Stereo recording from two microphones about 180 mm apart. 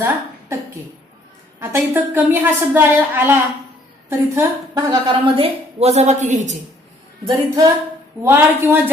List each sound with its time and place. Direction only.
0.0 s a woman's voice: 15° right (ahead or behind); by 6.6 s 40° right (ahead or behind)
7.3 s a woman's voice: 20° right (ahead or behind)